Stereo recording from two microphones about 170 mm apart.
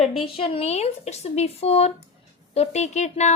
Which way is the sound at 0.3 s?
30° left (ahead or behind).